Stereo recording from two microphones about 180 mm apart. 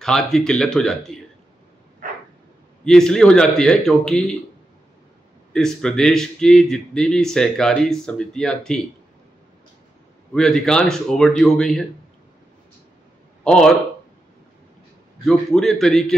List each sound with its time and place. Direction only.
0.0 s a man's voice: 5° left (ahead or behind)
2.8 s a man's voice: 5° left (ahead or behind)
5.5 s a man's voice: 5° left (ahead or behind)
10.3 s a man's voice: 5° left (ahead or behind)
13.4 s speech: 5° left (ahead or behind)
15.2 s a man's voice: centre (ahead or behind)